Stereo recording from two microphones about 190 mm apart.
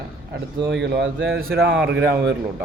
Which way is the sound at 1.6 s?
5° right (ahead or behind).